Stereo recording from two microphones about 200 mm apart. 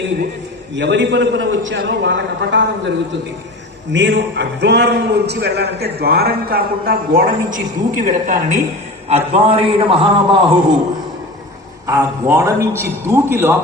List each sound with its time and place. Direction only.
0.8 s a man's voice: 65° right (ahead or behind)
3.9 s a man's voice: 60° right (ahead or behind); by 10.8 s 25° right (ahead or behind)
11.9 s a man's voice: 15° right (ahead or behind)